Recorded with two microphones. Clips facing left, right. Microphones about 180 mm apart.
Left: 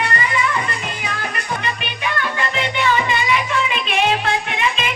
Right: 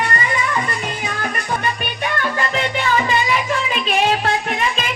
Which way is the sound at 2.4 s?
40° right (ahead or behind).